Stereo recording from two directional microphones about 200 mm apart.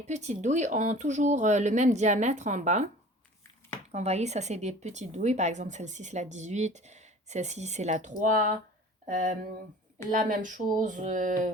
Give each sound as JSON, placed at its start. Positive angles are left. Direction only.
{"t": 0.0, "sound": "speech", "side_deg": -35}
{"t": 3.9, "sound": "speech", "side_deg": -35}